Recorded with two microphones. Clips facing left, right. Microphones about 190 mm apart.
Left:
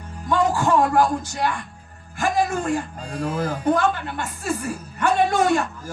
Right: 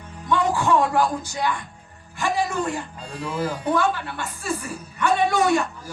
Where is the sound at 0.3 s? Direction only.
45° left (ahead or behind).